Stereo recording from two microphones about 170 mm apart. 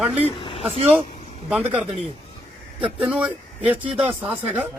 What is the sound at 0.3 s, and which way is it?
Vehicle, 30° left (ahead or behind).